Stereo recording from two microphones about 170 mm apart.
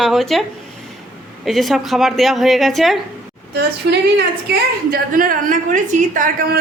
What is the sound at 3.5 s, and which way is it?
A woman's voice, 75° right (ahead or behind).